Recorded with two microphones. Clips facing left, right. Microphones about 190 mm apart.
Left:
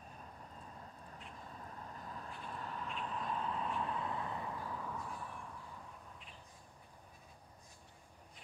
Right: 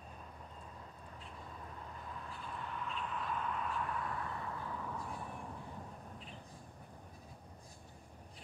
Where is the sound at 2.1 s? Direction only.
40° left (ahead or behind); by 4.5 s 20° left (ahead or behind).